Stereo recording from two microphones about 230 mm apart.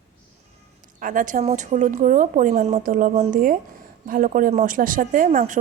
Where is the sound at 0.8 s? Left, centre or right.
Right.